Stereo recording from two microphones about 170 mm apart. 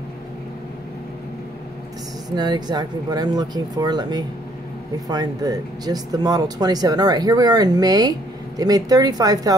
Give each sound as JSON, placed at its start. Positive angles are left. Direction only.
{"t": 2.3, "sound": "speech", "side_deg": -25}